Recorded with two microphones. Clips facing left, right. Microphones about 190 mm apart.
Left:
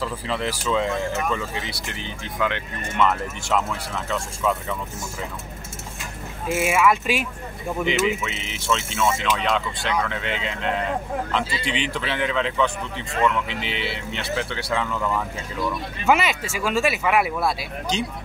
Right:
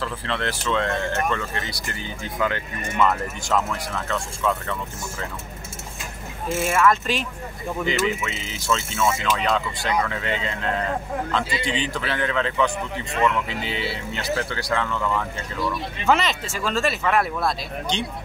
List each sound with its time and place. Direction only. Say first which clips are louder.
0.0 s speech: left 1 dB; 5° left (ahead or behind)
6.5 s speech: even; 10° left (ahead or behind)
13.7 s speech: right 1 dB; 40° right (ahead or behind)
14.1 s speech: right 1 dB; centre (ahead or behind)